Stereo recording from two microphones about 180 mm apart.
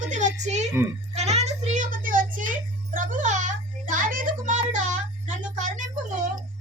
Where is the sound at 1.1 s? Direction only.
35° right (ahead or behind).